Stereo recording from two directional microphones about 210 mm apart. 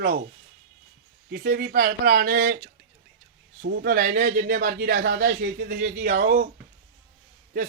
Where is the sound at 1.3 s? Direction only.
50° right (ahead or behind).